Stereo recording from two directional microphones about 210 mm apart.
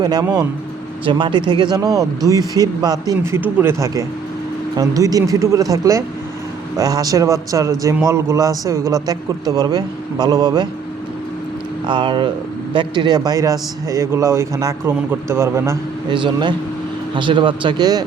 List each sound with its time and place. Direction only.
0.0 s a man's voice: 20° right (ahead or behind)
11.9 s a man's voice: 20° right (ahead or behind)